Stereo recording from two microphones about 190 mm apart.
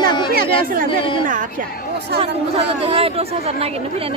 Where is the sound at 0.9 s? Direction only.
25° left (ahead or behind).